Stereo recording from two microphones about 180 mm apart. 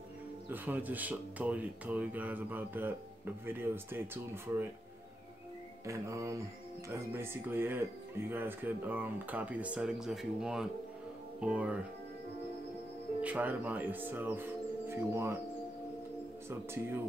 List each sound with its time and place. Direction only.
0.5 s speech: 10° right (ahead or behind)
5.9 s speech: 15° right (ahead or behind)
13.2 s speech: 10° right (ahead or behind)
16.4 s speech: 15° right (ahead or behind)